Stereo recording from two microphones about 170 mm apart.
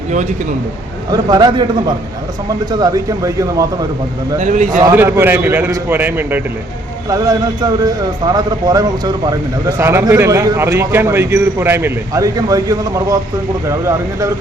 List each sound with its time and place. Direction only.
1.1 s a man's voice: 25° right (ahead or behind)
2.6 s a man's voice: 25° right (ahead or behind)
4.4 s a man's voice: 50° right (ahead or behind)
4.8 s a man's voice: 15° right (ahead or behind)
7.1 s a man's voice: 20° right (ahead or behind)